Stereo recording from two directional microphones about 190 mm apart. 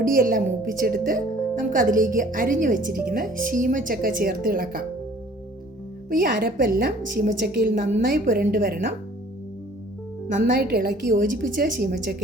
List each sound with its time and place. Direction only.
0.0 s speech: 50° right (ahead or behind)
6.1 s speech: 45° right (ahead or behind)
10.3 s speech: 50° right (ahead or behind)